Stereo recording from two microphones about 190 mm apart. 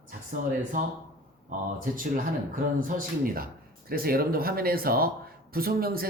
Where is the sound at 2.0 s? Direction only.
45° right (ahead or behind).